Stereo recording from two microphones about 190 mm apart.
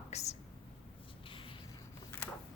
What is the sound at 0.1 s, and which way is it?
Speech, 35° left (ahead or behind).